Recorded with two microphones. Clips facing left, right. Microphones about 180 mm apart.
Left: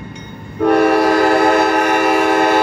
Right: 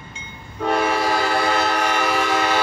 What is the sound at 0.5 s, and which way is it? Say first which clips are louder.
Train: left 9 dB; 55° left (ahead or behind).